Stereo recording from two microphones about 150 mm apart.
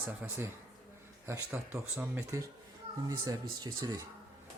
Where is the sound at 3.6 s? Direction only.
25° right (ahead or behind).